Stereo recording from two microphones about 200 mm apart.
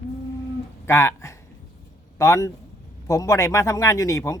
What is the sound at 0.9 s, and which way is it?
Speech, 15° left (ahead or behind).